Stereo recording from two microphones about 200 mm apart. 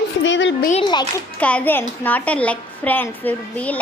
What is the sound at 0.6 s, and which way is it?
Speech, 40° left (ahead or behind).